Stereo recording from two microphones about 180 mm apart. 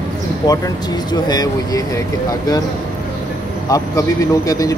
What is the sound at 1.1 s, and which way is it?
Speech, 20° left (ahead or behind).